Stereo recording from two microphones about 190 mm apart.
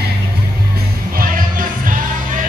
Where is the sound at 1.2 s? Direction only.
45° right (ahead or behind).